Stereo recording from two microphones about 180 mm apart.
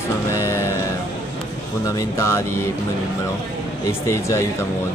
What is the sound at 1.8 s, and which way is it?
Speech, 15° left (ahead or behind).